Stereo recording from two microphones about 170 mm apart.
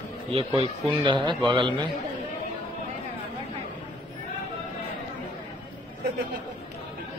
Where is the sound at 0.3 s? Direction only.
35° right (ahead or behind).